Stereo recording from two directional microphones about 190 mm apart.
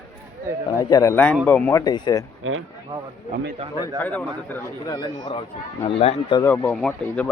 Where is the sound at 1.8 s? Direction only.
20° left (ahead or behind).